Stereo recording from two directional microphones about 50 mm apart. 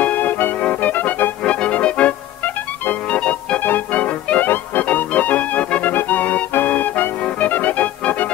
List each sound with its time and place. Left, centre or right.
0.0 s music: left
1.4 s music: left
3.1 s organ: left
3.6 s music: left